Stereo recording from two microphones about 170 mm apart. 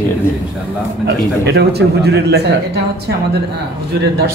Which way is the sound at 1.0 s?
75° right (ahead or behind).